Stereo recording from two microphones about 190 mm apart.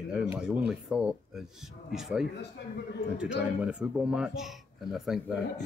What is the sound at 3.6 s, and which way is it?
A man's voice, 5° right (ahead or behind).